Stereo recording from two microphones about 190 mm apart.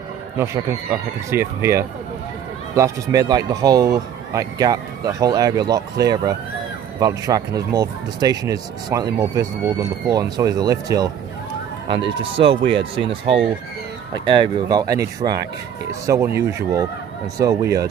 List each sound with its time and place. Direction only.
1.3 s speech: 15° right (ahead or behind)
12.2 s speech: 25° right (ahead or behind)